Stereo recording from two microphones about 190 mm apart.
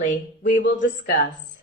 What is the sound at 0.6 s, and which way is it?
Speech, 70° left (ahead or behind).